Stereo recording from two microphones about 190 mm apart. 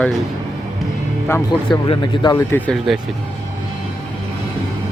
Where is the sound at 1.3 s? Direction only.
15° left (ahead or behind).